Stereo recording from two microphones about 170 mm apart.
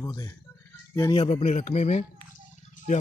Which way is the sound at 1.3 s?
40° left (ahead or behind).